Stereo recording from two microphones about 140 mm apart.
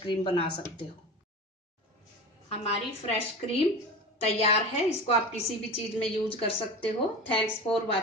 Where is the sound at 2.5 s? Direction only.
50° left (ahead or behind).